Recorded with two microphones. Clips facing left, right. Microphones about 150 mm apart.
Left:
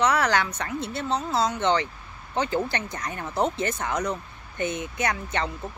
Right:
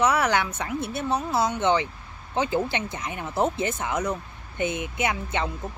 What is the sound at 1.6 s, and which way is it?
A woman's voice, 10° right (ahead or behind).